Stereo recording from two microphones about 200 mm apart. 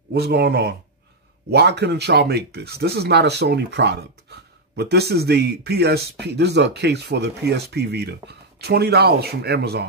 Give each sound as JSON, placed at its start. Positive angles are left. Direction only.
{"t": 0.1, "sound": "speech", "side_deg": -50}